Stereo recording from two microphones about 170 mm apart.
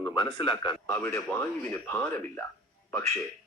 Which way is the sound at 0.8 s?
10° left (ahead or behind).